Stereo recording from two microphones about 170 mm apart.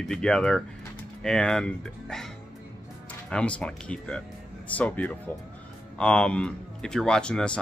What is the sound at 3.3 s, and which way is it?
Speech, 5° left (ahead or behind).